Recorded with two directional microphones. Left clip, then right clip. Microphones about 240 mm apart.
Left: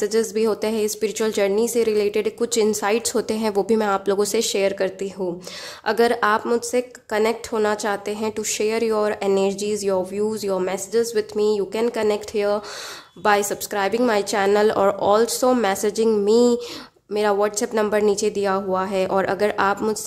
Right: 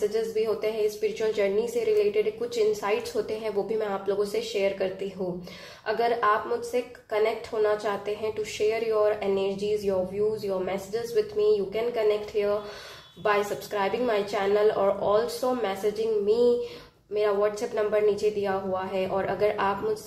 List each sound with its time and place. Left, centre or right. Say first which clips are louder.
0.1 s a woman's voice: left 6 dB; left